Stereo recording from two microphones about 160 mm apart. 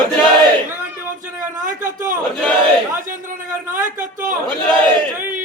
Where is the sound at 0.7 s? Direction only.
15° right (ahead or behind).